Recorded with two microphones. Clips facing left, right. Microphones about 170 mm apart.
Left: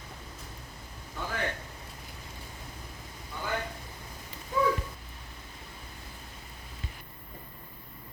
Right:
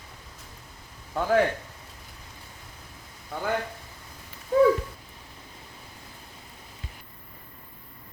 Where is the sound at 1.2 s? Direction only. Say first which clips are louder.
Right 14 dB; 70° right (ahead or behind).